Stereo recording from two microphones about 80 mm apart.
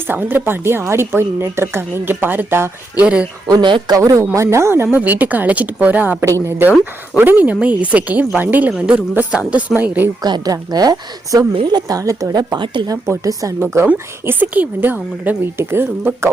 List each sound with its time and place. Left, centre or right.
0.1 s a woman's voice: right
3.0 s a woman's voice: centre
3.6 s speech: right
3.9 s a woman's voice: right
8.7 s a woman's voice: centre
10.2 s speech: right
12.9 s speech: right
13.6 s speech: right
13.8 s a woman's voice: right